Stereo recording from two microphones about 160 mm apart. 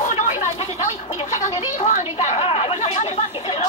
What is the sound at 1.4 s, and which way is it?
Chatter, 50° left (ahead or behind).